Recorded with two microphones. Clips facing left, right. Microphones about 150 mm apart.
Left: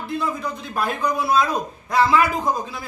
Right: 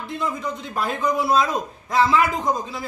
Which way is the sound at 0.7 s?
25° right (ahead or behind).